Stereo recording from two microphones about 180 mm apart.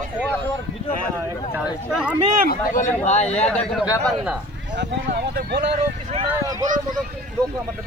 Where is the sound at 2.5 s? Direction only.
45° left (ahead or behind).